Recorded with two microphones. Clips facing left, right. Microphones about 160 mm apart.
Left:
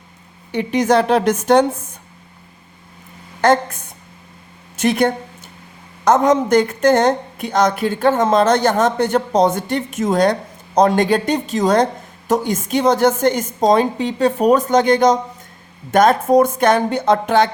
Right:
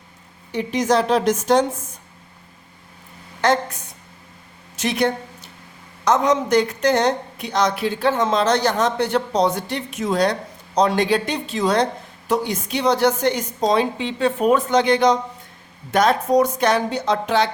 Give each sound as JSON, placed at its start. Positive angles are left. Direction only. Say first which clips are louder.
{"t": 0.5, "sound": "a woman's voice", "louder": "left 4 dB", "side_deg": 60}
{"t": 3.4, "sound": "a woman's voice", "louder": "left 4 dB", "side_deg": 50}